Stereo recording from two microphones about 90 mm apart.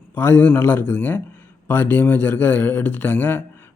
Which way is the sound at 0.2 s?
25° left (ahead or behind).